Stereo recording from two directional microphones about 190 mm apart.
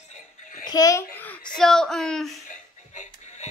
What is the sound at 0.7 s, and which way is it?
A child's voice, 20° left (ahead or behind).